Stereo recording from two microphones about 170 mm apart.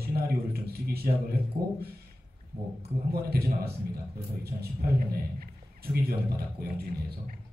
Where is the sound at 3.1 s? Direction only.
65° right (ahead or behind).